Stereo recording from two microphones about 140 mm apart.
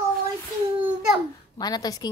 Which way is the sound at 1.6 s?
30° left (ahead or behind).